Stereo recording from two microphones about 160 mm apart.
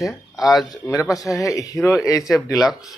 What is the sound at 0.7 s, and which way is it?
Speech, 20° left (ahead or behind).